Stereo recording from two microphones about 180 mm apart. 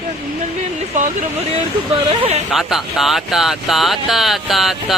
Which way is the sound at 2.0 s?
30° right (ahead or behind).